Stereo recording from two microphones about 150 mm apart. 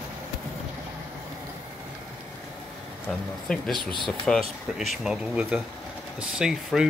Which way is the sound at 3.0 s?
5° left (ahead or behind).